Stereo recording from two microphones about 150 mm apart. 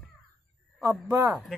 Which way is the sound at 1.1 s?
20° right (ahead or behind).